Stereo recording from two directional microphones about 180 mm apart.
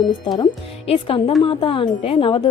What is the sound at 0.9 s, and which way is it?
A woman's voice, 30° left (ahead or behind).